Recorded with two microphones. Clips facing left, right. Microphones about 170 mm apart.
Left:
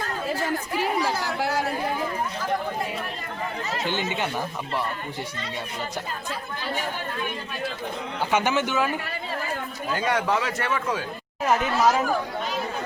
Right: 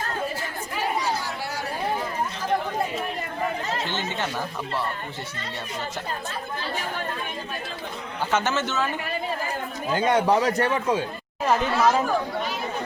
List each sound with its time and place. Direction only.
1.0 s chatter: 90° left
3.8 s a man's voice: 15° left (ahead or behind)
8.3 s a man's voice: 10° left (ahead or behind)
9.9 s a man's voice: 30° right (ahead or behind)
11.4 s speech: centre (ahead or behind)